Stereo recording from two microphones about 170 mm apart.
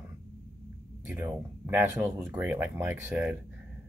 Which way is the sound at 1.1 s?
10° right (ahead or behind).